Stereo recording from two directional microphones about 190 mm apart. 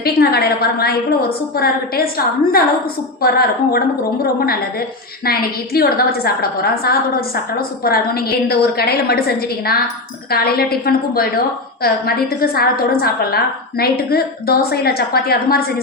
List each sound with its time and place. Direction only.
0.0 s a woman's voice: 55° left (ahead or behind)